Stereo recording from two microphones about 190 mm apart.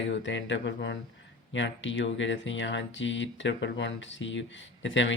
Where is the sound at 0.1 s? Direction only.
75° left (ahead or behind).